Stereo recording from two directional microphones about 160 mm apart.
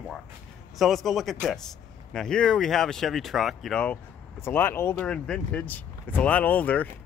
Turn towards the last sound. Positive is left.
turn(degrees=10)  # may be behind; listen again after turning